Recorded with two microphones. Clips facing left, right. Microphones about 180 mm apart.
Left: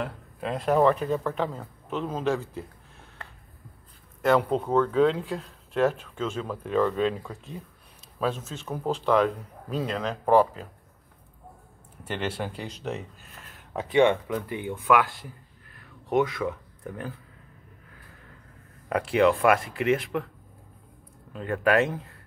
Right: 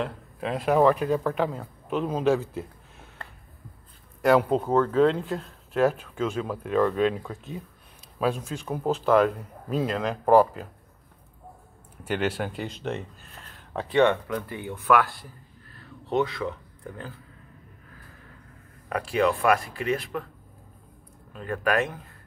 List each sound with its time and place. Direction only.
0.0 s speech: centre (ahead or behind)
4.2 s speech: 5° right (ahead or behind)
12.0 s speech: 5° right (ahead or behind)
13.7 s speech: 15° left (ahead or behind)
16.3 s speech: 15° left (ahead or behind)
18.9 s speech: 20° left (ahead or behind)
21.3 s speech: 20° left (ahead or behind)